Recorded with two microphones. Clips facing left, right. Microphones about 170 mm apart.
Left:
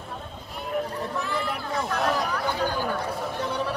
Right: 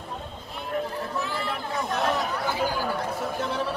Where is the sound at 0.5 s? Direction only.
Centre (ahead or behind).